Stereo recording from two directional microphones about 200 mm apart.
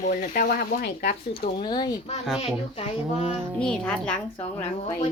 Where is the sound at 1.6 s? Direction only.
20° left (ahead or behind).